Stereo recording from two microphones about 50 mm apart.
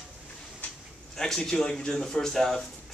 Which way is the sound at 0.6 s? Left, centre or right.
Left.